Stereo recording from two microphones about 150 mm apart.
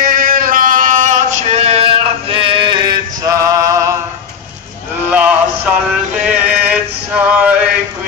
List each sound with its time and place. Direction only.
0.0 s male singing: 70° right (ahead or behind); by 2.8 s 35° right (ahead or behind)
3.3 s male singing: 20° right (ahead or behind)
5.1 s a sound: 10° right (ahead or behind)
6.2 s male singing: 10° right (ahead or behind)